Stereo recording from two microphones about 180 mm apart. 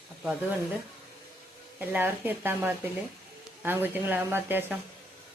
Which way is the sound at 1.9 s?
10° right (ahead or behind).